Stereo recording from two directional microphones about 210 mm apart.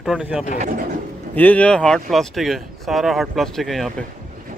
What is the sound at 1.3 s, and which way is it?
Speech, 5° left (ahead or behind).